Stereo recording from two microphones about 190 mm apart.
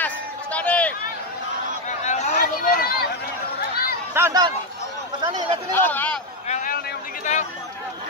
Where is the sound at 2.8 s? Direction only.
50° left (ahead or behind).